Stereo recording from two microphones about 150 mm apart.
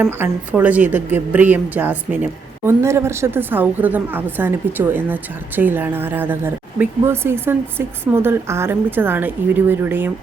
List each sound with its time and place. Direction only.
0.0 s a woman's voice: 10° right (ahead or behind)